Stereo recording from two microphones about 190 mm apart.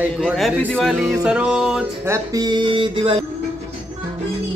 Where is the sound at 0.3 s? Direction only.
10° right (ahead or behind).